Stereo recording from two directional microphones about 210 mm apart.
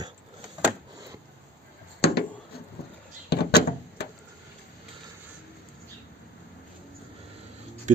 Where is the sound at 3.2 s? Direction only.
50° left (ahead or behind).